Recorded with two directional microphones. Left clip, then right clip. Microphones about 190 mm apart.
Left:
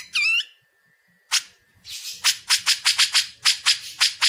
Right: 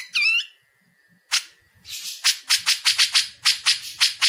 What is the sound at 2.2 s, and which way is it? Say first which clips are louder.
Squawk: even; 25° left (ahead or behind).